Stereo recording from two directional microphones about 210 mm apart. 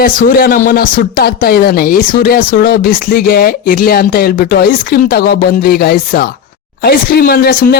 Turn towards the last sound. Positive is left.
turn(degrees=45)  # may be behind; listen again after turning